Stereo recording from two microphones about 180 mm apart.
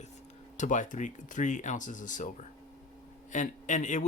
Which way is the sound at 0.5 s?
40° left (ahead or behind).